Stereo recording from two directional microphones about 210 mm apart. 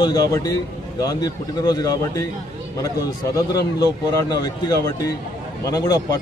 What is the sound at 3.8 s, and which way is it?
A man's voice, 20° left (ahead or behind).